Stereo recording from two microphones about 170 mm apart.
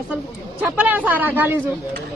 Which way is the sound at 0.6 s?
10° right (ahead or behind).